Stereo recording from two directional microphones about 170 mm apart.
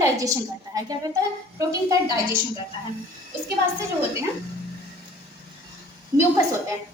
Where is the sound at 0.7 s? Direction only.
20° right (ahead or behind).